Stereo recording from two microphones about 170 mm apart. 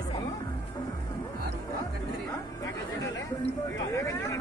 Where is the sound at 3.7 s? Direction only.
20° left (ahead or behind).